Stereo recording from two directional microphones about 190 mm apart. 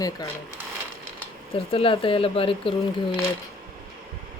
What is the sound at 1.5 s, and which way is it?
Speech, 30° left (ahead or behind).